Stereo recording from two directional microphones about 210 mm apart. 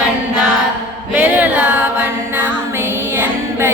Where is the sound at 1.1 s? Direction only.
5° right (ahead or behind).